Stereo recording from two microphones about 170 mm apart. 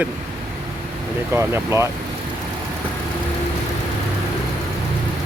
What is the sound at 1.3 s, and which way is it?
Speech, 15° right (ahead or behind).